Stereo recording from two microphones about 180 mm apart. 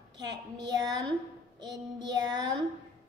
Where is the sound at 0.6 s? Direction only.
25° right (ahead or behind).